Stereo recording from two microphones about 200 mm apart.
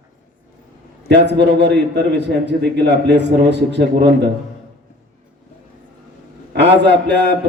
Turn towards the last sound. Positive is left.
turn(degrees=-60)  # may be behind; listen again after turning